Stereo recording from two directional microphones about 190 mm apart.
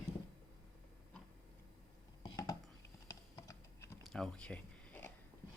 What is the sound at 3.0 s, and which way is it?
Typing, 15° left (ahead or behind).